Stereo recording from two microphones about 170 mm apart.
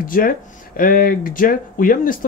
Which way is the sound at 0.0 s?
55° left (ahead or behind).